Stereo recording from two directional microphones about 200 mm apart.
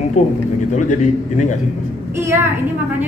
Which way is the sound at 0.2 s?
35° left (ahead or behind).